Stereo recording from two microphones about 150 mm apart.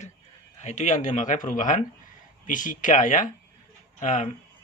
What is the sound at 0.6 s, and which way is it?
Speech, 50° left (ahead or behind).